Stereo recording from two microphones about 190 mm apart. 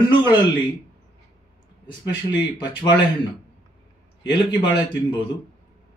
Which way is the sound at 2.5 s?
25° left (ahead or behind).